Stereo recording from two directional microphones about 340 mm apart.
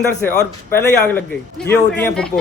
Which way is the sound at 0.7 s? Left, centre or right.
Centre.